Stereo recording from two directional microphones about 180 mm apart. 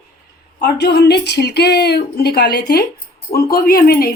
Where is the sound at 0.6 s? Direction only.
65° left (ahead or behind).